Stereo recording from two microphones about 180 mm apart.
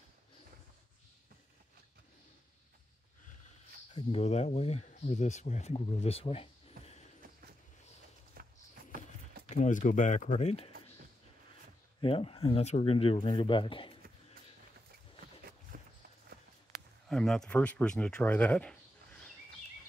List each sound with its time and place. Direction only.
3.9 s speech: 35° left (ahead or behind)
8.4 s a sound: 55° right (ahead or behind)
9.5 s speech: 45° left (ahead or behind)
12.0 s speech: 30° left (ahead or behind)
15.7 s walk: 50° right (ahead or behind)
17.1 s speech: 5° left (ahead or behind)